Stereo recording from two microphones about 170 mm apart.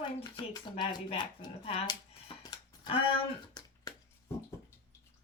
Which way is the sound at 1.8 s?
25° left (ahead or behind).